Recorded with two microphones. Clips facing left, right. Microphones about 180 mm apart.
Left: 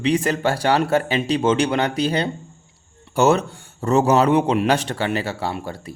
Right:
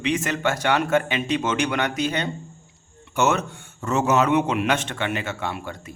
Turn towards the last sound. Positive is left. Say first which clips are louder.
# left 3 dB
turn(degrees=35)  # may be behind; listen again after turning